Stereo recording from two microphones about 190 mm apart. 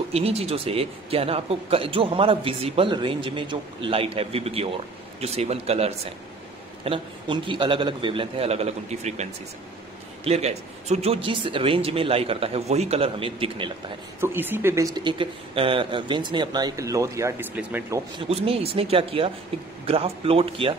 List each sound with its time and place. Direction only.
0.1 s a man's voice: 30° right (ahead or behind)
14.2 s speech: 10° right (ahead or behind)
18.3 s a man's voice: 30° right (ahead or behind)